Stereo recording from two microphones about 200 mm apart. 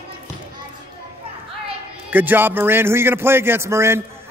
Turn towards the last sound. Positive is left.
turn(degrees=-15)  # may be behind; listen again after turning